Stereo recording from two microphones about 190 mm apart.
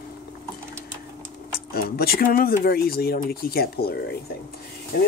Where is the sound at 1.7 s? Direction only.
50° left (ahead or behind).